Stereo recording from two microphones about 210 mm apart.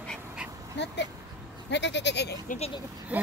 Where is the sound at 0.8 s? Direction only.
55° left (ahead or behind).